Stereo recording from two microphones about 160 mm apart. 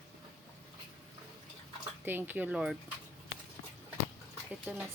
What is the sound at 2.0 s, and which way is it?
Speech, 10° right (ahead or behind).